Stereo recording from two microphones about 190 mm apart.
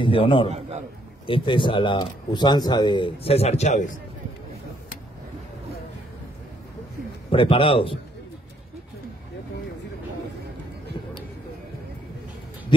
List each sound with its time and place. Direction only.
0.0 s speech: 25° left (ahead or behind)
0.5 s a man's voice: 35° right (ahead or behind)
1.2 s speech: 25° left (ahead or behind)
7.2 s speech: 30° left (ahead or behind)